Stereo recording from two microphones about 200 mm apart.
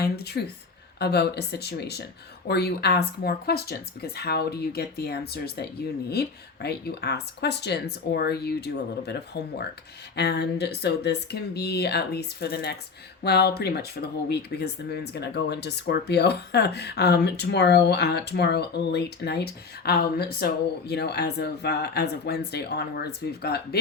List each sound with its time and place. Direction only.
0.0 s speech: 55° left (ahead or behind)